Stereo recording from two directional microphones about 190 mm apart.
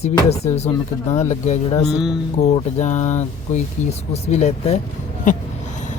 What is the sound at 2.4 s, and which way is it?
Speech, 40° left (ahead or behind).